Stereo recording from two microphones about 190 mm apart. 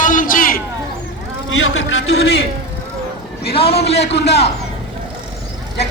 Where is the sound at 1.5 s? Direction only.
90° left.